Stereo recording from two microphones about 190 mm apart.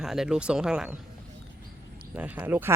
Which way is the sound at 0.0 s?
Centre (ahead or behind).